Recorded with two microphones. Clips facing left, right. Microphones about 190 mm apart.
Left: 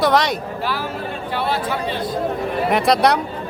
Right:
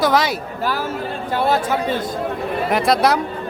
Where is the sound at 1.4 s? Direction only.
45° right (ahead or behind).